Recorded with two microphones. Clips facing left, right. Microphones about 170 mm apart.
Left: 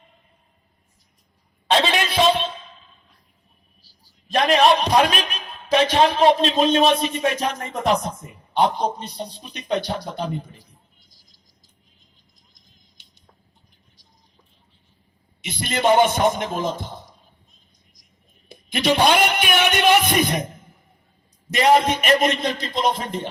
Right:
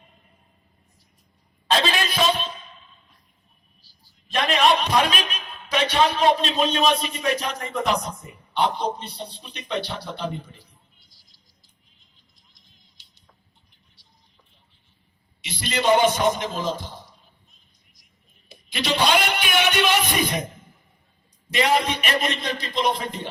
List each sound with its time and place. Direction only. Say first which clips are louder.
1.9 s a sound: left 4 dB; 25° left (ahead or behind)
4.0 s a man's voice: left 5 dB; 40° left (ahead or behind)
12.5 s music: left 2 dB; 45° left (ahead or behind)
15.4 s a man's voice: left 2 dB; 50° left (ahead or behind)
18.9 s a sound: left 1 dB; 50° left (ahead or behind)
21.5 s a man's voice: left 5 dB; 45° left (ahead or behind)